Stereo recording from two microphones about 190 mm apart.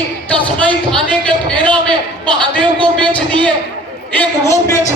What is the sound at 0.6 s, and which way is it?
Speech, 5° left (ahead or behind).